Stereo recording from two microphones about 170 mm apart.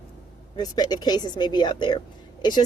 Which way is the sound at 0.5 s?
25° left (ahead or behind).